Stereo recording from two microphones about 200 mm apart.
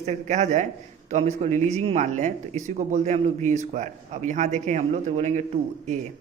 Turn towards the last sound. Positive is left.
turn(degrees=-35)  # may be behind; listen again after turning